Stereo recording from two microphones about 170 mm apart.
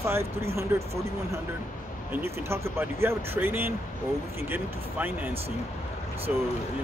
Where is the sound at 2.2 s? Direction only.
15° right (ahead or behind).